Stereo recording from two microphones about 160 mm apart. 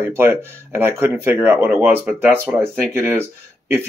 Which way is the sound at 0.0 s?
15° right (ahead or behind).